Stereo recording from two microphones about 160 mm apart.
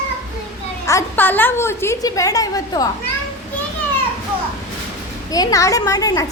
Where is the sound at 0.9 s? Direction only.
15° left (ahead or behind).